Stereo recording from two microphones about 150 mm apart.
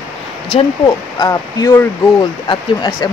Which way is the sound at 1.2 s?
25° left (ahead or behind).